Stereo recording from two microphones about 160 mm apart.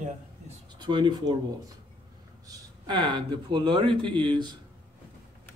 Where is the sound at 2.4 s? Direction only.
25° right (ahead or behind).